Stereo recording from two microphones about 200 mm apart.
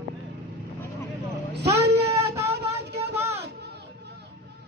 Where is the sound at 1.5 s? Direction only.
55° right (ahead or behind).